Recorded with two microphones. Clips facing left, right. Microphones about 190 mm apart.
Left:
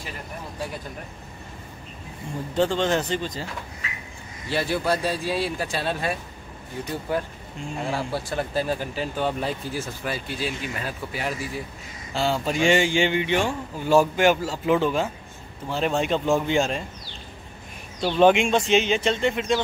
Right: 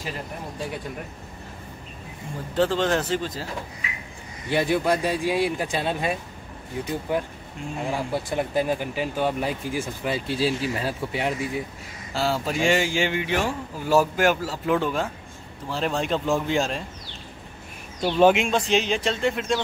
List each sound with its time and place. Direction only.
2.5 s a man's voice: centre (ahead or behind)
4.5 s speech: 20° right (ahead or behind)
10.1 s speech: 30° right (ahead or behind)
12.1 s a man's voice: 5° right (ahead or behind)
18.0 s a man's voice: 5° right (ahead or behind)